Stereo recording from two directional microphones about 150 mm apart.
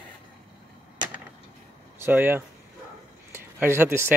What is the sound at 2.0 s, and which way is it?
Speech, 15° right (ahead or behind).